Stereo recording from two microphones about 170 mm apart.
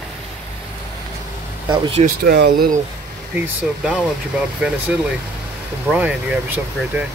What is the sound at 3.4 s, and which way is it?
Speech, 5° right (ahead or behind).